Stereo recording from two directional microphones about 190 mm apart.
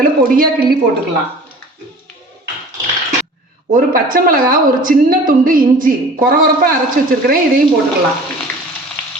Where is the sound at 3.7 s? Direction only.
45° right (ahead or behind).